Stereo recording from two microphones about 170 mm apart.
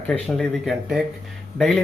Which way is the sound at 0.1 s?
Centre (ahead or behind).